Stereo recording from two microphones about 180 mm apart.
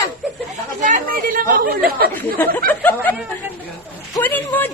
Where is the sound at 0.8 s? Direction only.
50° right (ahead or behind).